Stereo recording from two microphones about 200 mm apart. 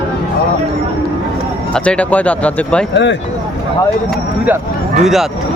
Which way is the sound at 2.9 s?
60° left (ahead or behind).